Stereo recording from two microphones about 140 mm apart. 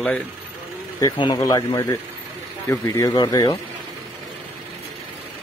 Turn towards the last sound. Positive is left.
turn(degrees=30)  # may be behind; listen again after turning